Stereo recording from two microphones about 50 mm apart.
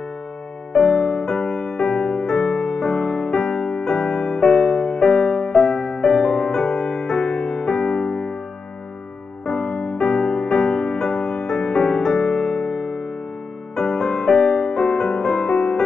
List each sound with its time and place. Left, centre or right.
0.7 s music: centre
9.5 s music: centre